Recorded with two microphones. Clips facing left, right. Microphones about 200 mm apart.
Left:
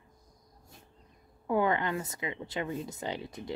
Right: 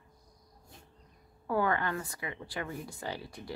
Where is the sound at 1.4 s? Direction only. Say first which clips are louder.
Left 2 dB; 20° left (ahead or behind).